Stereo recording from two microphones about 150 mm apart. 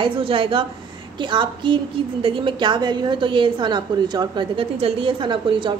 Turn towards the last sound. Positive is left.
turn(degrees=-35)  # may be behind; listen again after turning